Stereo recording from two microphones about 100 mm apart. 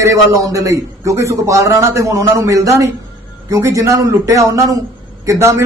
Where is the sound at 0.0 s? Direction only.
30° right (ahead or behind).